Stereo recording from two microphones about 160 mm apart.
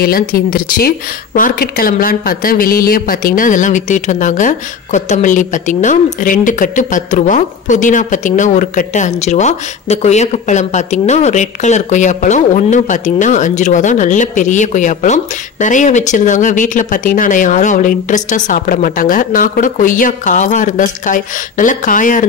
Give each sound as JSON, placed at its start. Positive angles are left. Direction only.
{"t": 0.0, "sound": "speech", "side_deg": 65}